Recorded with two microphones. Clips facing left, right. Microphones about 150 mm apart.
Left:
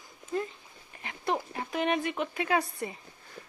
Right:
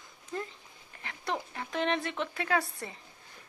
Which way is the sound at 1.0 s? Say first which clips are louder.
Left 4 dB; 20° left (ahead or behind).